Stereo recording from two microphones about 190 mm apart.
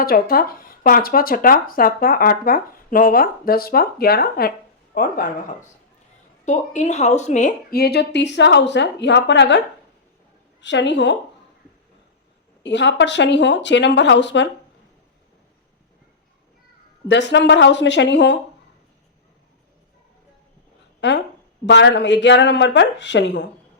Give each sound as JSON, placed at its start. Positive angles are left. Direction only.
{"t": 0.0, "sound": "speech", "side_deg": 50}
{"t": 6.4, "sound": "a woman's voice", "side_deg": 40}
{"t": 10.6, "sound": "speech", "side_deg": 70}
{"t": 12.6, "sound": "speech", "side_deg": 70}
{"t": 17.1, "sound": "speech", "side_deg": 70}
{"t": 21.0, "sound": "a sound", "side_deg": 70}
{"t": 21.7, "sound": "speech", "side_deg": 65}